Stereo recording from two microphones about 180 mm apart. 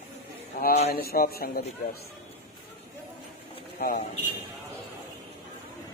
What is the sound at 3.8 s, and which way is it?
Speech, 55° left (ahead or behind).